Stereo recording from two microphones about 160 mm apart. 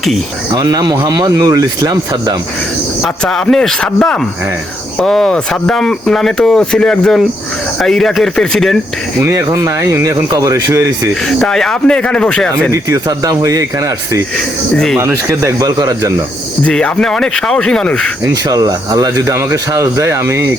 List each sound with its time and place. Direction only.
0.5 s speech: 25° right (ahead or behind)
3.0 s speech: centre (ahead or behind)
9.2 s speech: 20° right (ahead or behind)
11.3 s speech: 5° left (ahead or behind)
12.7 s speech: 20° right (ahead or behind)
16.6 s speech: 5° left (ahead or behind)
18.2 s speech: 20° right (ahead or behind)